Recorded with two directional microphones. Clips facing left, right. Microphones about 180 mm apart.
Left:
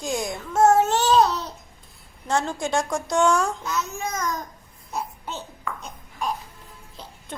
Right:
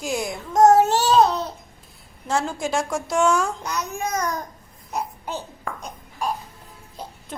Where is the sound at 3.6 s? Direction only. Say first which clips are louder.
Right 1 dB; 15° right (ahead or behind).